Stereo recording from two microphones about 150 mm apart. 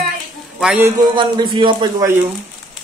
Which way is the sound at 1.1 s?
30° right (ahead or behind).